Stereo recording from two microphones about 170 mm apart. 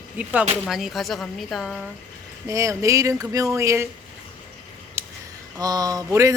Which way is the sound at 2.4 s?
20° right (ahead or behind).